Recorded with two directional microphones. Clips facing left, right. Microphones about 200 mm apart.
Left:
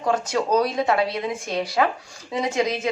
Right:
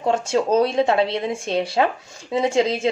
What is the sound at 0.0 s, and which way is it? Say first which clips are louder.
Speech: right 3 dB; 25° right (ahead or behind).